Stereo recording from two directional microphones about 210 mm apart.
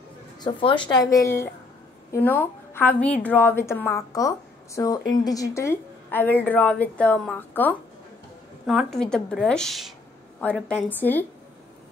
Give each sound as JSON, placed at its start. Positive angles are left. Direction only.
{"t": 0.4, "sound": "a woman's voice", "side_deg": 20}